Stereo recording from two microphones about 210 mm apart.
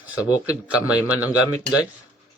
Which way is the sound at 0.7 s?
5° right (ahead or behind).